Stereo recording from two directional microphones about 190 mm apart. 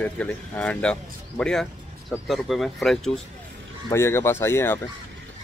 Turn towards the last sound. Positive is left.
turn(degrees=10)  # may be behind; listen again after turning